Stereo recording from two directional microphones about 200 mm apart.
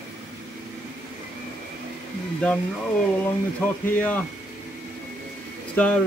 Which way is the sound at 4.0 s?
10° left (ahead or behind).